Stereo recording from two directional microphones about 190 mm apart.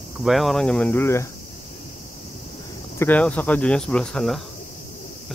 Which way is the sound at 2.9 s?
10° left (ahead or behind).